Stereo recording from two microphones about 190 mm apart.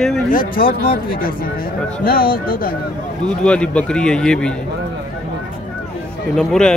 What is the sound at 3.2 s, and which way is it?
Speech, 5° left (ahead or behind).